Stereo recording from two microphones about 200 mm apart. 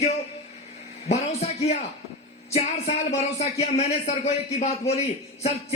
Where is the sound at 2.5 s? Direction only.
30° left (ahead or behind).